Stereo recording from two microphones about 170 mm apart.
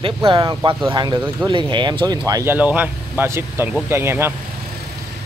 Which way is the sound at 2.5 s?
10° right (ahead or behind).